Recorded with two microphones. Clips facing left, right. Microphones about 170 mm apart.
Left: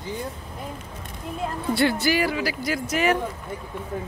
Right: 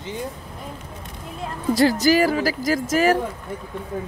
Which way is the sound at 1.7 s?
40° right (ahead or behind).